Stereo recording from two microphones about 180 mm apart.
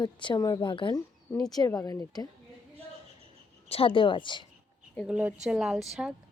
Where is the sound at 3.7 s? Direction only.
30° left (ahead or behind).